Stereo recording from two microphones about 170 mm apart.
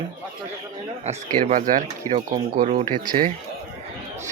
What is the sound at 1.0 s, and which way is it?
Speech, 45° right (ahead or behind).